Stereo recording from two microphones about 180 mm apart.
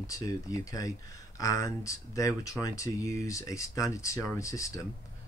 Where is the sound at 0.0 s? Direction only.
20° left (ahead or behind).